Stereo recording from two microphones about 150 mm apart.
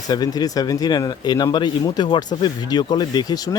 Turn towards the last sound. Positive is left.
turn(degrees=25)  # may be behind; listen again after turning